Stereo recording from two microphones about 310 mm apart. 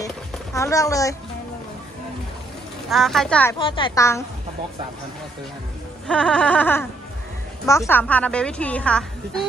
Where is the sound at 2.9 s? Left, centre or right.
Centre.